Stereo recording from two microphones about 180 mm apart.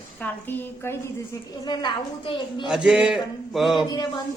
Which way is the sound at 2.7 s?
5° right (ahead or behind).